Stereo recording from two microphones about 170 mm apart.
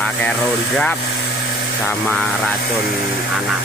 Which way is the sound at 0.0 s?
5° left (ahead or behind).